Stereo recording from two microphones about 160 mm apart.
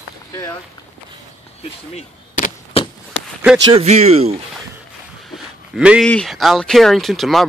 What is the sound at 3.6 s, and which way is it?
Speech, 35° right (ahead or behind).